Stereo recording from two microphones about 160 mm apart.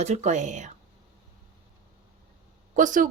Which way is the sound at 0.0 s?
45° right (ahead or behind).